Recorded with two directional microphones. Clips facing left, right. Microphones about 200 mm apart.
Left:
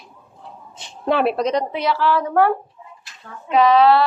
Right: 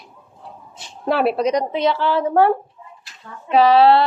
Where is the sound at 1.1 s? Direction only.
Centre (ahead or behind).